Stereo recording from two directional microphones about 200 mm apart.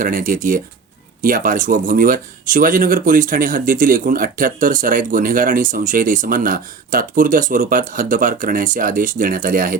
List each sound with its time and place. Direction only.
0.0 s speech: 45° right (ahead or behind)